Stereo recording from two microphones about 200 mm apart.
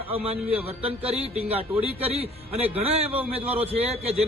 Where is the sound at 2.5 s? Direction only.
10° right (ahead or behind).